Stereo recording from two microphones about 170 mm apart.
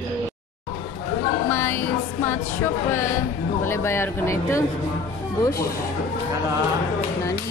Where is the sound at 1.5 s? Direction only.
15° left (ahead or behind).